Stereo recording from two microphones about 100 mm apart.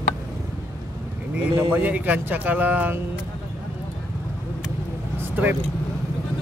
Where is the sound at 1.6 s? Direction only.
15° right (ahead or behind).